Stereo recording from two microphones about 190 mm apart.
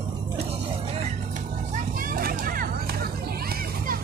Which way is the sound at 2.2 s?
50° right (ahead or behind).